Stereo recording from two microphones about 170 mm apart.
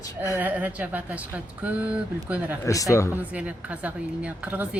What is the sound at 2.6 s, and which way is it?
Speech, 20° left (ahead or behind).